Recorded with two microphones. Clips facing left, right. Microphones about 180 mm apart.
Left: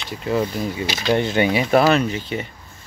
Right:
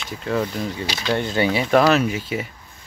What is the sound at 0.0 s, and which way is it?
Speech, 5° left (ahead or behind).